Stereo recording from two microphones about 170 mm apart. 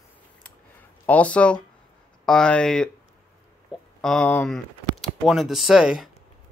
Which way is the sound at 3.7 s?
5° right (ahead or behind).